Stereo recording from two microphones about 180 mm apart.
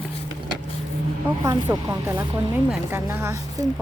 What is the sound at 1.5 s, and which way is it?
A woman's voice, 15° right (ahead or behind).